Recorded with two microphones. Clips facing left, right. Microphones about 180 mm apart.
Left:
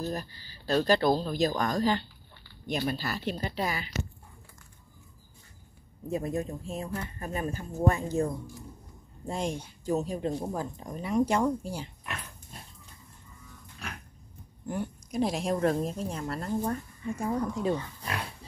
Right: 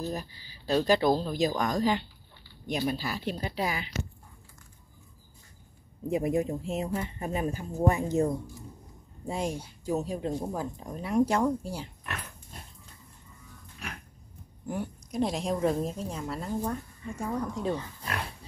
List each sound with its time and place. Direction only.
0.0 s speech: centre (ahead or behind)
0.5 s speech: 15° right (ahead or behind)
6.0 s speech: 15° right (ahead or behind)
9.3 s speech: 5° right (ahead or behind)
14.7 s speech: centre (ahead or behind)
17.2 s speech: 10° left (ahead or behind)